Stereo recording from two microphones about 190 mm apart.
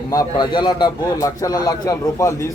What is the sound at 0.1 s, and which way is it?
A man's voice, 20° left (ahead or behind).